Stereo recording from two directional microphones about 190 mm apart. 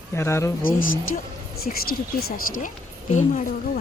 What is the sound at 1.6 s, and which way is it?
A woman's voice, 50° left (ahead or behind).